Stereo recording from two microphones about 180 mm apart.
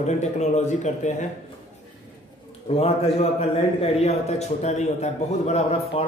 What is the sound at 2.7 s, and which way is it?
Speech, 35° left (ahead or behind).